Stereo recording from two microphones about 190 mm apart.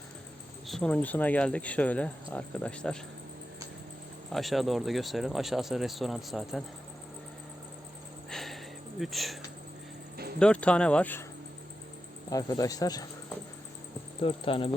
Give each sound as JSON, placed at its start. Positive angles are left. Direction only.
{"t": 0.7, "sound": "speech", "side_deg": 5}
{"t": 4.3, "sound": "speech", "side_deg": 0}
{"t": 8.3, "sound": "a sound", "side_deg": 0}
{"t": 9.0, "sound": "speech", "side_deg": 0}
{"t": 10.4, "sound": "speech", "side_deg": 5}
{"t": 12.3, "sound": "speech", "side_deg": 20}
{"t": 14.2, "sound": "speech", "side_deg": 30}